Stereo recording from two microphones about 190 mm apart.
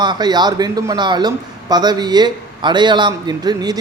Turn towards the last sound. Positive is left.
turn(degrees=-20)  # may be behind; listen again after turning